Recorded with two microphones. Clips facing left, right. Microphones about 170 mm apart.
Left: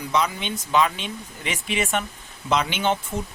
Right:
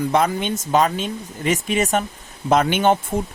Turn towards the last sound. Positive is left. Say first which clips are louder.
# right 7 dB
turn(degrees=-50)  # may be behind; listen again after turning